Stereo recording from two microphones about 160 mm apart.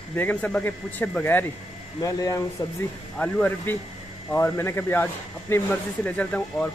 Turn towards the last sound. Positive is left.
turn(degrees=10)  # may be behind; listen again after turning